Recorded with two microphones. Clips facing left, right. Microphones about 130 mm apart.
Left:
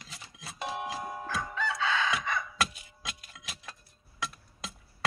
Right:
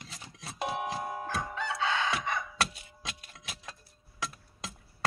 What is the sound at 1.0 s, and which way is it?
Chicken, 20° right (ahead or behind).